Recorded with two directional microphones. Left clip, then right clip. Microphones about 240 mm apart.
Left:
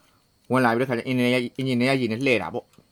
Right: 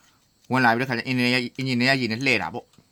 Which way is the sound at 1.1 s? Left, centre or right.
Right.